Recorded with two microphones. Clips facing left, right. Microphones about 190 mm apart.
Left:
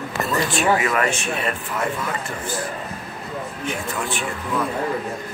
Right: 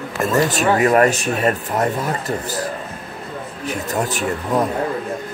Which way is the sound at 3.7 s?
40° right (ahead or behind).